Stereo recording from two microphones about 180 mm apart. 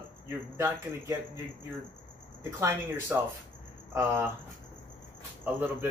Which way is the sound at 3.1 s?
10° right (ahead or behind).